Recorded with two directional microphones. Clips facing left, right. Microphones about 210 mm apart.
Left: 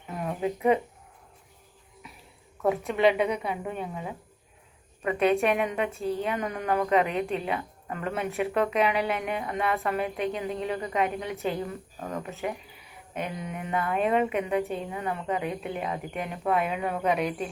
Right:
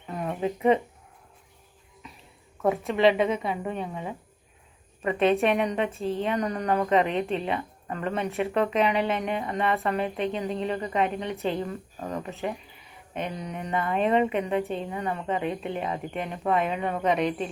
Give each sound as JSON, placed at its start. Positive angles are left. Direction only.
{"t": 0.1, "sound": "a sound", "side_deg": 0}
{"t": 2.6, "sound": "a woman's voice", "side_deg": 0}
{"t": 5.0, "sound": "a woman's voice", "side_deg": 0}